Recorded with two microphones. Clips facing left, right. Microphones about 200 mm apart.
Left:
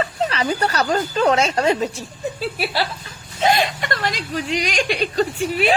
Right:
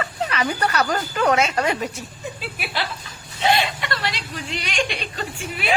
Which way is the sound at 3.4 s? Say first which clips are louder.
Left 2 dB; 45° left (ahead or behind).